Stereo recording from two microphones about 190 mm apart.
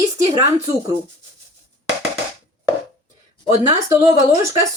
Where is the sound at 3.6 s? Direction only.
15° right (ahead or behind).